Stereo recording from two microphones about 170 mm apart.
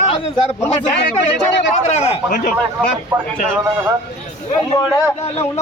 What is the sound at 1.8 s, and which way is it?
Speech, 40° left (ahead or behind).